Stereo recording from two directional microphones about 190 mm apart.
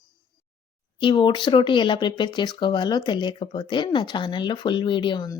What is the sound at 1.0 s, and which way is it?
Speech, 25° left (ahead or behind).